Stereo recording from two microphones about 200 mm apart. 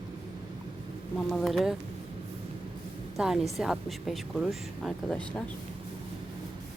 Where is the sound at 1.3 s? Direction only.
Centre (ahead or behind).